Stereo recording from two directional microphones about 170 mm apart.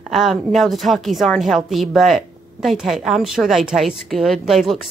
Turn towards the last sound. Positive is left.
turn(degrees=0)  # may be behind; listen again after turning